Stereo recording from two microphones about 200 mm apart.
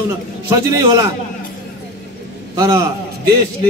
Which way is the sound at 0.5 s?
15° right (ahead or behind).